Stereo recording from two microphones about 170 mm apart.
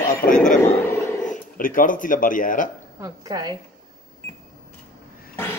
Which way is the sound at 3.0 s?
25° right (ahead or behind).